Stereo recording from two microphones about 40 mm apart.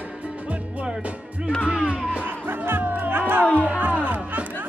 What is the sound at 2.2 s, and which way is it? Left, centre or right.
Music, right.